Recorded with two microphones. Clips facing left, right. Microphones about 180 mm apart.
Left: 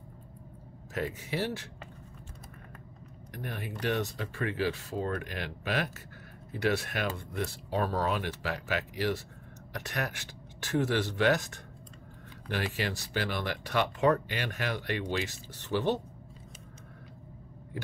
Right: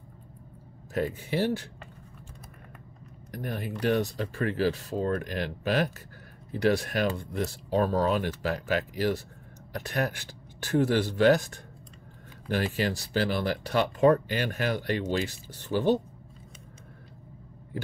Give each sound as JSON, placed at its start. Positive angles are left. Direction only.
{"t": 1.2, "sound": "speech", "side_deg": -30}
{"t": 3.3, "sound": "speech", "side_deg": -35}